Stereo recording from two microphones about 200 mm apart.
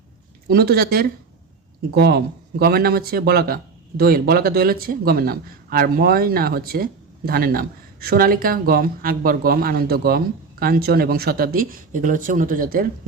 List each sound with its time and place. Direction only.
0.4 s speech: 50° right (ahead or behind)